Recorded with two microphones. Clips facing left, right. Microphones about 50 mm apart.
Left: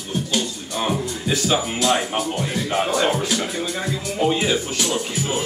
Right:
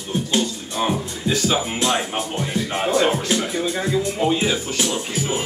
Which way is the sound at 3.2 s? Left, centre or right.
Centre.